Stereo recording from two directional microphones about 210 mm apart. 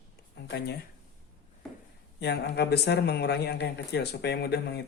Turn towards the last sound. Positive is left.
turn(degrees=50)  # may be behind; listen again after turning